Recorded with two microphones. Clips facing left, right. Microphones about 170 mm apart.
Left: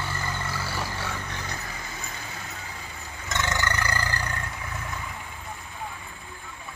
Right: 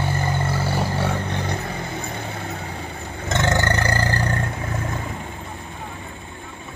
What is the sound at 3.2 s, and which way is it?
Roar, 55° right (ahead or behind).